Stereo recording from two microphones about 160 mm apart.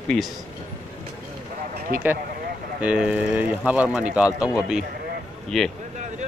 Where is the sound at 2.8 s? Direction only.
10° right (ahead or behind).